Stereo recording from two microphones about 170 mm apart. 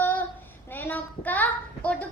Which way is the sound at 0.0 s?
10° left (ahead or behind).